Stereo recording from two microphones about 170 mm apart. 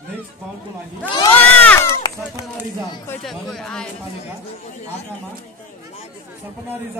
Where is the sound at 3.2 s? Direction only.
Centre (ahead or behind).